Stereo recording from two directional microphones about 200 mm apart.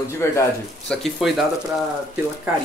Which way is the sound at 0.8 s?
Centre (ahead or behind).